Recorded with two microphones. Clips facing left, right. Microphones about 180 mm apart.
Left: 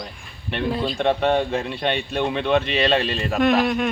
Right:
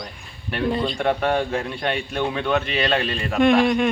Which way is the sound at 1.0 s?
25° left (ahead or behind).